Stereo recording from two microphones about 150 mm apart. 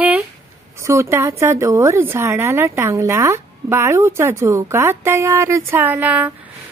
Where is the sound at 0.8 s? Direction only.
20° right (ahead or behind).